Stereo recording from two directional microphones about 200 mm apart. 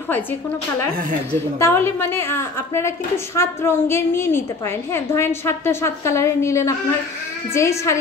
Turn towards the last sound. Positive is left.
turn(degrees=15)  # may be behind; listen again after turning